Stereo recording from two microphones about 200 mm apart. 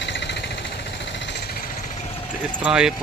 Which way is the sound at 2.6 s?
5° right (ahead or behind).